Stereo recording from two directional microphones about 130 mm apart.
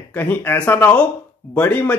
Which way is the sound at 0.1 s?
15° left (ahead or behind).